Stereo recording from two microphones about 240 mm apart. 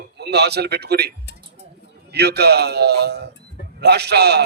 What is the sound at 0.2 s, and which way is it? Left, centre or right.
Speech, right.